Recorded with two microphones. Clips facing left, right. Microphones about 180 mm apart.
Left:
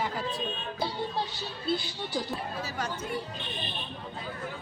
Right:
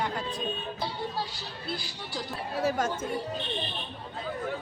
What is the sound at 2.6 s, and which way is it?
Speech, 50° right (ahead or behind).